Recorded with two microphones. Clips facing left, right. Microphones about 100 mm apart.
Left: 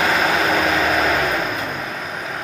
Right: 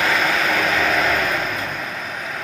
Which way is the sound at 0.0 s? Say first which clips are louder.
Left 2 dB; 20° left (ahead or behind).